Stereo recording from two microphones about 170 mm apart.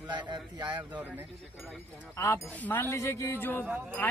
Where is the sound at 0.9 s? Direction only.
10° right (ahead or behind).